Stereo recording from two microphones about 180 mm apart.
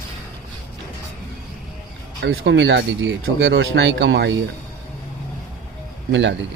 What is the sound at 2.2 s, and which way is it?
A man's voice, 75° right (ahead or behind).